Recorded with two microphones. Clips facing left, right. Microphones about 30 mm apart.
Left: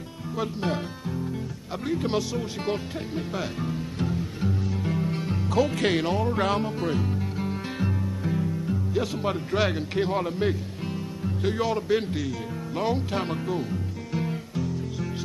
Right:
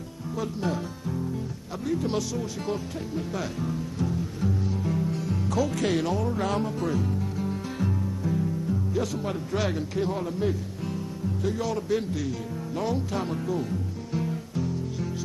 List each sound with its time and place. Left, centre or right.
0.4 s speech: left
4.8 s music: left
5.6 s speech: left
6.5 s music: left
11.4 s speech: left
13.6 s music: left